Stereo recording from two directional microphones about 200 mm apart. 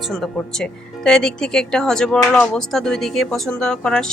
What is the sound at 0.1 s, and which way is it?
Speech, centre (ahead or behind).